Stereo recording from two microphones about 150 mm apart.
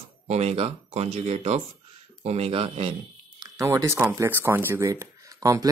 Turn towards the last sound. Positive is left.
turn(degrees=-25)  # may be behind; listen again after turning